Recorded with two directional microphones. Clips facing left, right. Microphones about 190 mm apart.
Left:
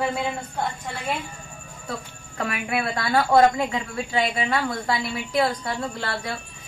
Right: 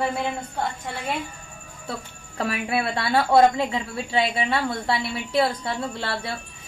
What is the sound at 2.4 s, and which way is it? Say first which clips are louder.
A woman's voice: right 1 dB; 30° right (ahead or behind).